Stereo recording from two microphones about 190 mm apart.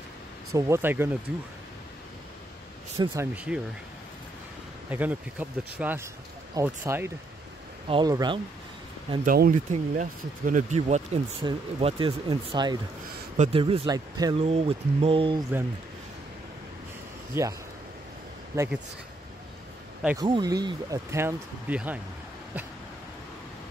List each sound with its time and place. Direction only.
0.5 s speech: 15° right (ahead or behind)
3.0 s speech: 20° right (ahead or behind)
3.3 s speech: 5° right (ahead or behind)
4.9 s speech: 10° right (ahead or behind)
9.2 s speech: 45° right (ahead or behind)
11.4 s speech: 25° right (ahead or behind)
14.4 s speech: 30° right (ahead or behind)
17.3 s speech: 15° right (ahead or behind)
20.2 s speech: 20° right (ahead or behind)